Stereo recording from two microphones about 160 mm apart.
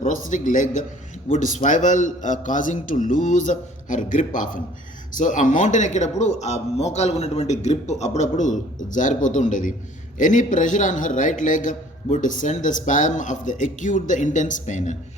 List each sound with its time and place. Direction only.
0.0 s a man's voice: 55° left (ahead or behind)